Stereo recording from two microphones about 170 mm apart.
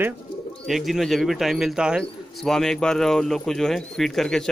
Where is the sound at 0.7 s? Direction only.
Centre (ahead or behind).